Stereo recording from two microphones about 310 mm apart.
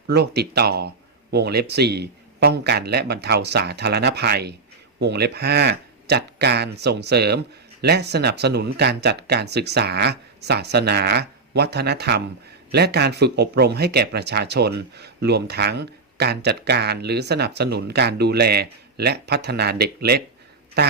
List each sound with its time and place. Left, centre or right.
0.1 s speech: right